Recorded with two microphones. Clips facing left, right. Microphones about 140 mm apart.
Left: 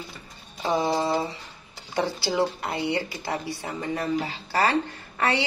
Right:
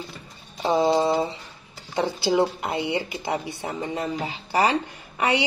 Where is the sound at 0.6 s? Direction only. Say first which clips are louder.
Right 4 dB; 25° right (ahead or behind).